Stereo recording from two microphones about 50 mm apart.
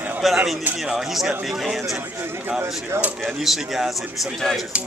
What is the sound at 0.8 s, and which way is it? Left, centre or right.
Speech, centre.